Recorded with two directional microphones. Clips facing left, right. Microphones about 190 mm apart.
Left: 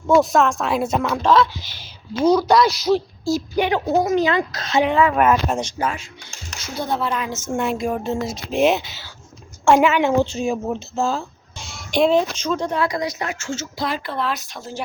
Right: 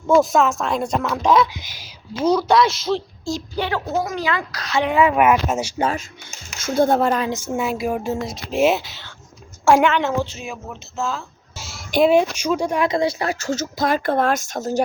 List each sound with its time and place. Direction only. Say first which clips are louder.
0.1 s speech: even; centre (ahead or behind)
1.2 s speech: even; 15° right (ahead or behind)
2.2 s speech: left 1 dB; 5° left (ahead or behind)
3.6 s a woman's voice: left 4 dB; 20° left (ahead or behind)
4.9 s speech: right 4 dB; 10° right (ahead or behind)
5.8 s speech: right 3 dB; 35° right (ahead or behind)
6.6 s speech: right 7 dB; 50° right (ahead or behind)
7.3 s speech: even; 10° right (ahead or behind); by 10.1 s 5° left (ahead or behind)
10.3 s speech: left 10 dB; 35° left (ahead or behind)
11.5 s speech: right 1 dB; 5° right (ahead or behind)
12.9 s speech: right 5 dB; 30° right (ahead or behind)